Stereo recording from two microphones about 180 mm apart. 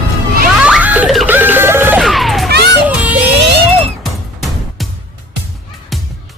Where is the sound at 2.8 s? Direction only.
10° right (ahead or behind).